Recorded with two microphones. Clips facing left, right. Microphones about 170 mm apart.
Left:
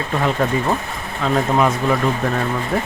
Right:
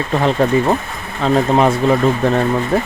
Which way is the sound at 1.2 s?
35° right (ahead or behind).